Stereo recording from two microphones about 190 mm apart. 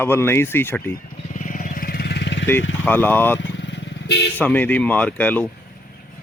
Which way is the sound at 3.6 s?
70° left (ahead or behind).